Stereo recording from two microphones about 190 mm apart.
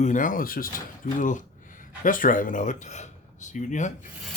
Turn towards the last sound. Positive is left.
turn(degrees=40)  # may be behind; listen again after turning